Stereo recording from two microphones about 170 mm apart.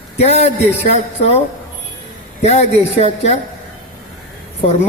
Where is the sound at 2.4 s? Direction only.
40° left (ahead or behind).